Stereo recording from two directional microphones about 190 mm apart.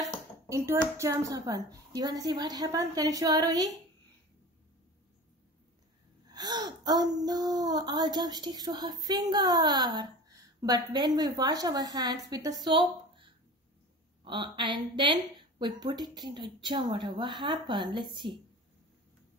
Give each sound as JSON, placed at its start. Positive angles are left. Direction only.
{"t": 0.5, "sound": "speech", "side_deg": -15}
{"t": 6.2, "sound": "speech", "side_deg": -20}
{"t": 12.6, "sound": "a sound", "side_deg": -25}
{"t": 14.2, "sound": "speech", "side_deg": -25}